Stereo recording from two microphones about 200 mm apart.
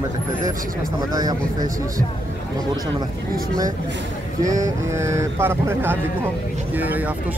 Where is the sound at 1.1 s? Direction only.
20° right (ahead or behind).